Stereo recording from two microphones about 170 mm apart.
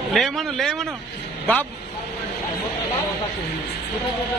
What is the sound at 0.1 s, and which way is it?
A man's voice, centre (ahead or behind).